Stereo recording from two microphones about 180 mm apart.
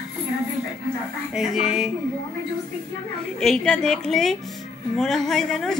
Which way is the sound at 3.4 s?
5° left (ahead or behind).